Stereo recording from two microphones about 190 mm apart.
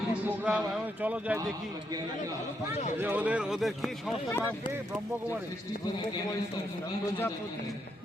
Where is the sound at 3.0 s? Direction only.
10° right (ahead or behind).